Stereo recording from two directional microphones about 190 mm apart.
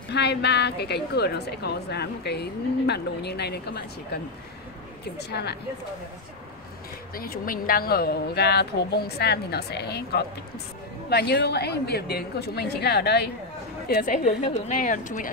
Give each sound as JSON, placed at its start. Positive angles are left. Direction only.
{"t": 0.1, "sound": "a woman's voice", "side_deg": 60}
{"t": 7.2, "sound": "a woman's voice", "side_deg": 50}
{"t": 13.8, "sound": "a woman's voice", "side_deg": 50}